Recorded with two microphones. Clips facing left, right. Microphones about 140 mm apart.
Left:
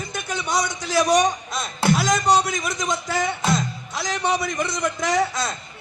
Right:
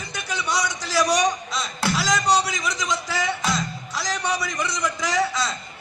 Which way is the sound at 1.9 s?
50° left (ahead or behind).